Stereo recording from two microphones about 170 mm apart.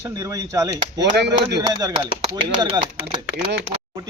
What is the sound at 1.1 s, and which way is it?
Speech, 75° right (ahead or behind).